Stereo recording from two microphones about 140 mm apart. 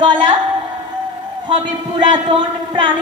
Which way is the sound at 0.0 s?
35° right (ahead or behind).